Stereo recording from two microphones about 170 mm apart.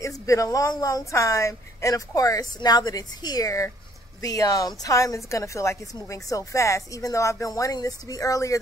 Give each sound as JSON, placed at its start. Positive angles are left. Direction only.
{"t": 0.0, "sound": "a woman's voice", "side_deg": 20}